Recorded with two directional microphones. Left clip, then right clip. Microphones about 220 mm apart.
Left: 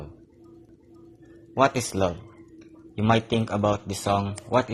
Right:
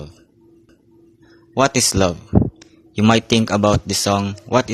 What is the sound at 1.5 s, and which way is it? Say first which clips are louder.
Speech: right 6 dB; 45° right (ahead or behind).